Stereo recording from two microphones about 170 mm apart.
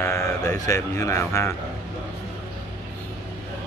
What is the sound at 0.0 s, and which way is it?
Speech, 15° left (ahead or behind).